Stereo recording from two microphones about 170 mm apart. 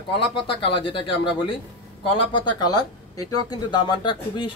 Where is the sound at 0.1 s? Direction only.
30° left (ahead or behind).